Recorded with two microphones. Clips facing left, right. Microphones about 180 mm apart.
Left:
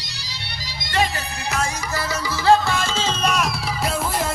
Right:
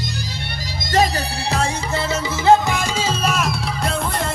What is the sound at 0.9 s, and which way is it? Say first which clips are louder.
Music: right 5 dB; 40° right (ahead or behind).